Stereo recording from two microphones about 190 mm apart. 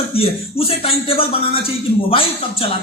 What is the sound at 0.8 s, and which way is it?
A man's voice, 30° left (ahead or behind).